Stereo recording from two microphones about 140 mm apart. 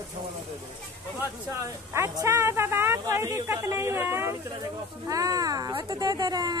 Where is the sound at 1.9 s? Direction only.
20° right (ahead or behind).